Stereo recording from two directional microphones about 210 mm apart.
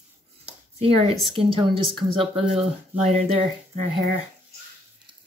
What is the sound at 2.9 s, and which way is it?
Speech, 10° right (ahead or behind).